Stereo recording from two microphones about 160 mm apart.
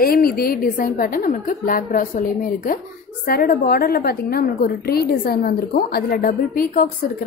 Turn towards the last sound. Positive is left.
turn(degrees=70)  # may be behind; listen again after turning